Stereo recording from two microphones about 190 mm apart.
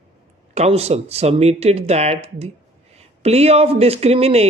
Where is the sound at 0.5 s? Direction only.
35° right (ahead or behind).